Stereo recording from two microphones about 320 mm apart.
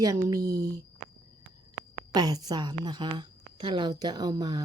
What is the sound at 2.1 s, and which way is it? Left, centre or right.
Speech, centre.